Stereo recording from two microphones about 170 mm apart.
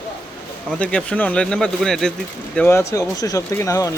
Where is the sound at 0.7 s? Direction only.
5° left (ahead or behind).